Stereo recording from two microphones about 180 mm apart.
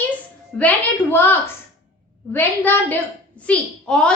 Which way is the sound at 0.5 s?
5° left (ahead or behind).